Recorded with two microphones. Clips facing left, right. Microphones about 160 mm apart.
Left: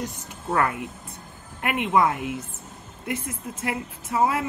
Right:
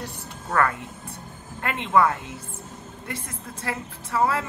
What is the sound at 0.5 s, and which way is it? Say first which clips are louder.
A woman's voice: even; 15° left (ahead or behind).